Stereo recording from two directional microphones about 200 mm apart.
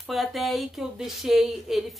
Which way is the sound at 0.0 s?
Centre (ahead or behind).